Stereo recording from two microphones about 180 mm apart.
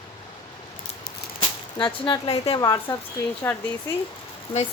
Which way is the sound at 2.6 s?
20° left (ahead or behind).